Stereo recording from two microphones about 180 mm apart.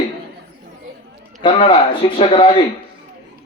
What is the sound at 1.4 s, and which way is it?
A man's voice, 30° left (ahead or behind).